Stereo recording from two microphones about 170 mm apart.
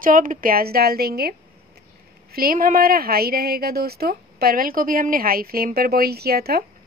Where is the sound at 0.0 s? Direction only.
50° right (ahead or behind).